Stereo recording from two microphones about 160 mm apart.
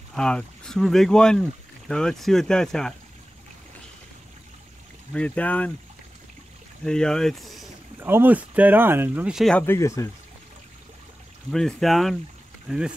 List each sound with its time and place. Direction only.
0.1 s speech: 5° left (ahead or behind)
5.1 s speech: 10° left (ahead or behind)
6.8 s speech: 5° left (ahead or behind)
8.0 s speech: 15° right (ahead or behind); by 9.8 s 5° left (ahead or behind)
9.8 s speech: 20° left (ahead or behind)
11.5 s speech: centre (ahead or behind)